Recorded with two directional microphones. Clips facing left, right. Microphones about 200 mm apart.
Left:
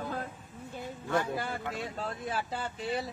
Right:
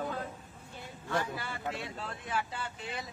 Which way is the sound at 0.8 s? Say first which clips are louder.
Left 3 dB; 50° left (ahead or behind).